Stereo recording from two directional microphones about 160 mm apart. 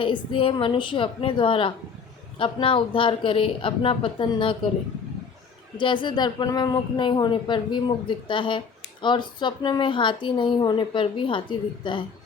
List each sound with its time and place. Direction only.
0.0 s speech: 35° left (ahead or behind)
5.7 s a woman's voice: 30° left (ahead or behind)